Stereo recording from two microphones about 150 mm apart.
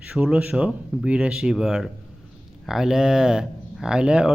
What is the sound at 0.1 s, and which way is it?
Speech, 5° right (ahead or behind).